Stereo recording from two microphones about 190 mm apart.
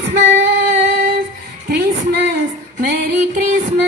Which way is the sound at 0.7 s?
45° right (ahead or behind).